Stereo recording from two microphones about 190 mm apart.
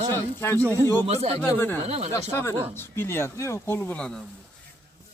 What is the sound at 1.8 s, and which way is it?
Speech, 35° right (ahead or behind).